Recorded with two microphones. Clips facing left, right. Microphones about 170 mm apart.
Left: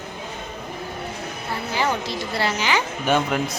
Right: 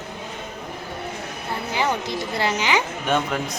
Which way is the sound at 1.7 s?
15° right (ahead or behind).